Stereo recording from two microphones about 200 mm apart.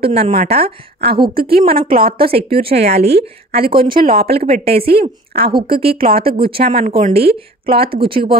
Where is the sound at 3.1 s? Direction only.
50° right (ahead or behind).